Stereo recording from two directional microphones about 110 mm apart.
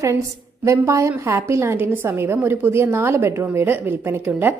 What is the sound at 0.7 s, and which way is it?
A woman's voice, 25° right (ahead or behind).